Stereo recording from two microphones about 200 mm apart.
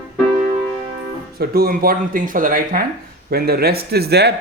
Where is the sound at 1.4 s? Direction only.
50° right (ahead or behind).